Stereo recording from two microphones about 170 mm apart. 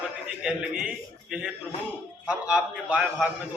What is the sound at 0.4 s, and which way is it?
A man's voice, 5° right (ahead or behind).